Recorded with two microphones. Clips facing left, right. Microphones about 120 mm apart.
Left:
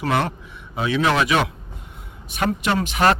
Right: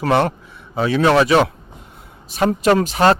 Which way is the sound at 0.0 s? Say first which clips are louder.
Right 5 dB; 35° right (ahead or behind).